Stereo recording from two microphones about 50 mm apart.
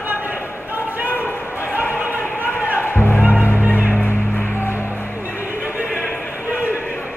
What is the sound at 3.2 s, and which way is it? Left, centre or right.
Music, right.